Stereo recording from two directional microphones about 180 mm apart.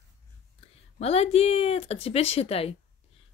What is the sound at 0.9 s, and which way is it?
A child's voice, 35° left (ahead or behind).